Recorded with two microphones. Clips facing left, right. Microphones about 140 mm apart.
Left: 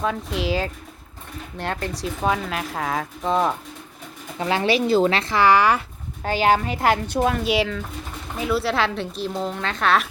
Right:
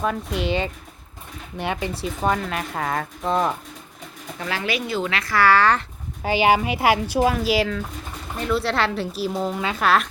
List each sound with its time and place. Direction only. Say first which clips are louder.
0.0 s speech: even; centre (ahead or behind)
4.4 s speech: left 6 dB; 25° left (ahead or behind)
6.2 s speech: right 1 dB; 10° right (ahead or behind)